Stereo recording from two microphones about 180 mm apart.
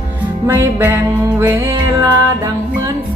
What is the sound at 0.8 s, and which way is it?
Music, 15° right (ahead or behind).